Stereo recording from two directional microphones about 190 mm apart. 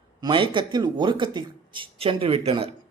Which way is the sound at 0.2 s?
25° right (ahead or behind).